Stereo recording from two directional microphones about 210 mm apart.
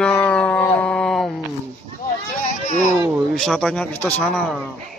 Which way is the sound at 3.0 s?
Centre (ahead or behind).